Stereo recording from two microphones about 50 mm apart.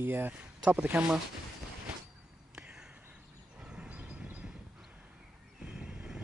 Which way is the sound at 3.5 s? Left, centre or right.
Right.